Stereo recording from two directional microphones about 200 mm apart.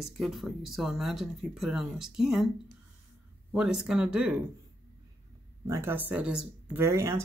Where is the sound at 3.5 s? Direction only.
5° right (ahead or behind).